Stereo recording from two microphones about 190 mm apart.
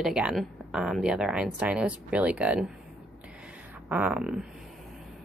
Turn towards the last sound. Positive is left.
turn(degrees=-5)  # may be behind; listen again after turning